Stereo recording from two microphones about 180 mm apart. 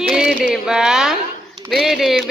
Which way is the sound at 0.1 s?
5° right (ahead or behind).